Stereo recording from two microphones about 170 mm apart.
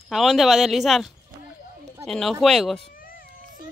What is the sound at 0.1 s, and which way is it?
Speech, centre (ahead or behind).